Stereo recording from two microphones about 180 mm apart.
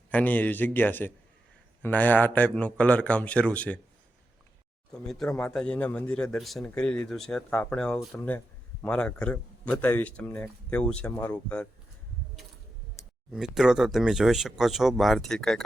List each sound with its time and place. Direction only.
0.1 s speech: 10° left (ahead or behind)
4.9 s speech: 5° left (ahead or behind)
13.3 s speech: 5° right (ahead or behind)